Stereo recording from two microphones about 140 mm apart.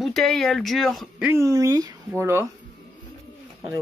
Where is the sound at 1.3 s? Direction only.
20° right (ahead or behind).